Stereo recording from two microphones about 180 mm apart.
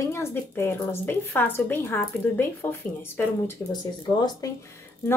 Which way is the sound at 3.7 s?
25° left (ahead or behind).